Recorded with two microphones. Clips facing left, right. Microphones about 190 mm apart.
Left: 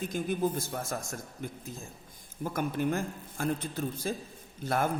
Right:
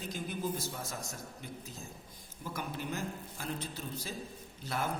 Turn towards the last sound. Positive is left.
turn(degrees=50)  # may be behind; listen again after turning